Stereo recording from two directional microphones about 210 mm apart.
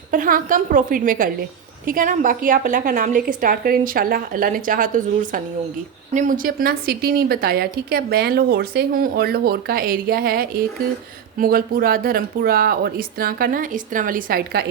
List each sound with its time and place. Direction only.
0.1 s a woman's voice: 40° right (ahead or behind)